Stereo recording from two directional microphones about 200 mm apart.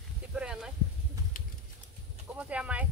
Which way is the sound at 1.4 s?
45° left (ahead or behind).